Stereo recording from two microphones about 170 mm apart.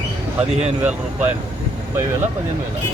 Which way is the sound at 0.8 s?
10° right (ahead or behind).